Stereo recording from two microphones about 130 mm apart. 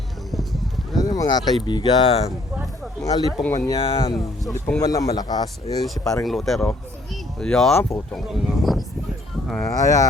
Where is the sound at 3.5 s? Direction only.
25° left (ahead or behind).